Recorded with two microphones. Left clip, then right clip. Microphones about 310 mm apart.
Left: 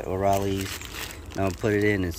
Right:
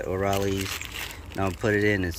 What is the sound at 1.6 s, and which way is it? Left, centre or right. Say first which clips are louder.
Speech: right 1 dB; centre.